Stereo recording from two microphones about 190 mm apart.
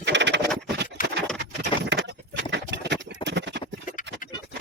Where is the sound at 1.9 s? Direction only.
65° right (ahead or behind).